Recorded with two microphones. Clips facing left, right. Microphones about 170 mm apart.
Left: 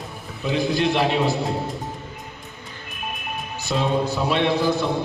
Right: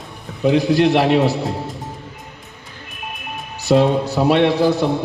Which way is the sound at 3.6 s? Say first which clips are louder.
Right 8 dB; 75° right (ahead or behind).